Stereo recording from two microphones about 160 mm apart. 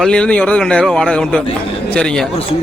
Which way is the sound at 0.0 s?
5° left (ahead or behind).